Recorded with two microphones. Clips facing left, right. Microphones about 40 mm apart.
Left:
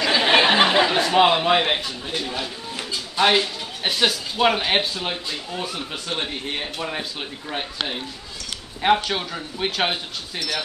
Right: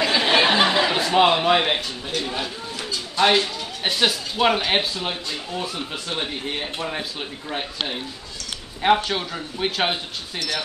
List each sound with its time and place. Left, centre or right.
0.1 s a sound: left
0.8 s speech: centre
3.2 s speech: centre
8.8 s speech: centre